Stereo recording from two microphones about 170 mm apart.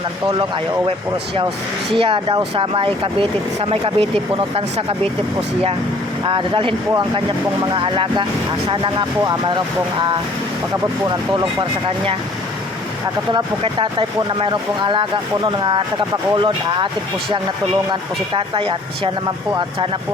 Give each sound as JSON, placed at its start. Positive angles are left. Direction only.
{"t": 2.0, "sound": "speech", "side_deg": -30}
{"t": 6.2, "sound": "speech", "side_deg": -30}
{"t": 11.0, "sound": "speech", "side_deg": -25}
{"t": 14.4, "sound": "speech", "side_deg": -30}
{"t": 18.3, "sound": "speech", "side_deg": -30}